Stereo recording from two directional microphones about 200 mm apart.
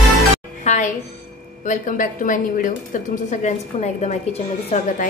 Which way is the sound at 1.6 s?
40° left (ahead or behind).